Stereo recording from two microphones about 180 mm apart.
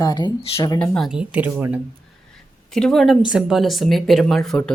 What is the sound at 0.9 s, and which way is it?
Speech, centre (ahead or behind).